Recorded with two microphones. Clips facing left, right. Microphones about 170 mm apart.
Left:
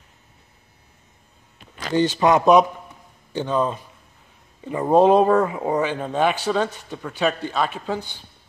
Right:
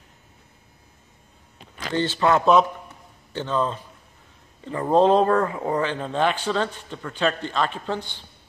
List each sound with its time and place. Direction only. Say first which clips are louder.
2.0 s speech: left 3 dB; 15° left (ahead or behind)